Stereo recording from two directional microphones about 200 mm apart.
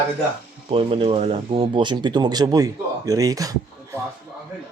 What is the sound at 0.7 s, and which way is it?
Speech, 25° right (ahead or behind).